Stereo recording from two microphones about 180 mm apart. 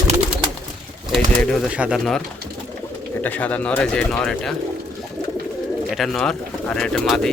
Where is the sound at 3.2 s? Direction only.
10° left (ahead or behind).